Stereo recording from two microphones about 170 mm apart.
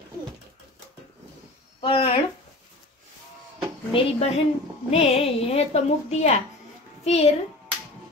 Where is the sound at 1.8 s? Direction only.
35° left (ahead or behind).